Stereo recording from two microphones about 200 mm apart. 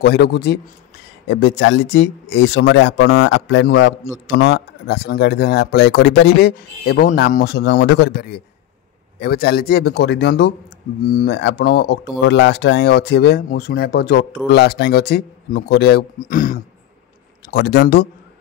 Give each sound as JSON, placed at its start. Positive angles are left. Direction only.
{"t": 0.0, "sound": "speech", "side_deg": 55}
{"t": 4.4, "sound": "speech", "side_deg": 55}
{"t": 17.5, "sound": "speech", "side_deg": 55}